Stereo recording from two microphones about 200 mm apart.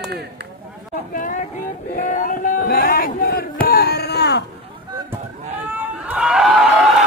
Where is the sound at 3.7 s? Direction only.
50° left (ahead or behind).